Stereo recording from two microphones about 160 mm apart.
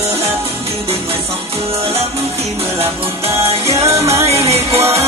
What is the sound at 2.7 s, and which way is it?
Music, 15° right (ahead or behind).